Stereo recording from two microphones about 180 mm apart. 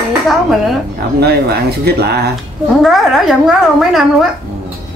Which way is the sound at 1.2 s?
60° right (ahead or behind).